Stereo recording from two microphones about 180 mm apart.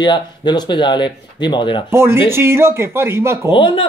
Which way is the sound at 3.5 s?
25° left (ahead or behind).